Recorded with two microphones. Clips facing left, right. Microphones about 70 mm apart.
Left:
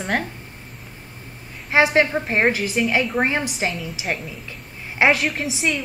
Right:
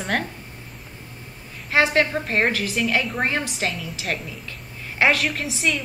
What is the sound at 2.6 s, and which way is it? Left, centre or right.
Speech, centre.